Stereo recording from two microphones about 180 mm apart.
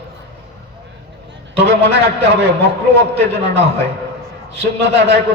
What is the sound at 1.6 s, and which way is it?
Speech, 70° right (ahead or behind).